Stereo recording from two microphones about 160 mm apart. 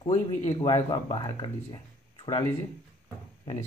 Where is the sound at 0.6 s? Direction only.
30° left (ahead or behind).